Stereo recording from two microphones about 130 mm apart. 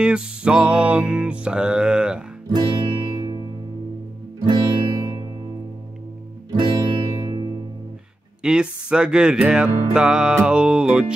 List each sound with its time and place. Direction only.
0.0 s music: 5° right (ahead or behind)
2.5 s music: 35° right (ahead or behind)
6.6 s music: 40° right (ahead or behind)
8.4 s music: 5° right (ahead or behind)